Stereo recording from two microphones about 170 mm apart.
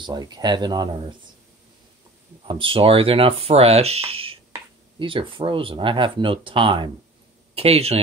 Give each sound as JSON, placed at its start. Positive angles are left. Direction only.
{"t": 0.0, "sound": "speech", "side_deg": -25}
{"t": 2.4, "sound": "speech", "side_deg": -30}